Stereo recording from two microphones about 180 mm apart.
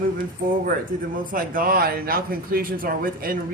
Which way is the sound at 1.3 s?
50° right (ahead or behind).